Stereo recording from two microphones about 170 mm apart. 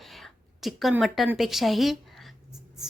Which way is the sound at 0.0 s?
Centre (ahead or behind).